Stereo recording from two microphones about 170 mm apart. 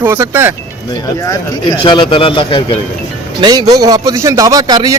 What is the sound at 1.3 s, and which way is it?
Speech, 25° left (ahead or behind).